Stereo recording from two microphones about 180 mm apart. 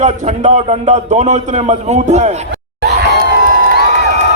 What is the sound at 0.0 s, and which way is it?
A man's voice, 40° right (ahead or behind).